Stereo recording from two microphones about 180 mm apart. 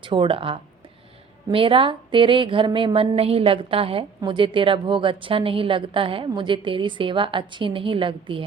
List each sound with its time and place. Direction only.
0.0 s a woman's voice: 30° right (ahead or behind)